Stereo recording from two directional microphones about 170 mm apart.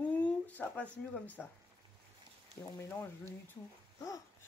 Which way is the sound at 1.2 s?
10° left (ahead or behind).